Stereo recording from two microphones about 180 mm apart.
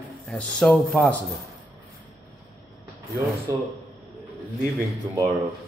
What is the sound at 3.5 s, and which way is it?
Speech, 15° right (ahead or behind).